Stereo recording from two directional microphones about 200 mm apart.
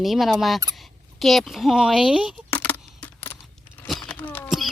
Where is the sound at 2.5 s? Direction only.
5° left (ahead or behind).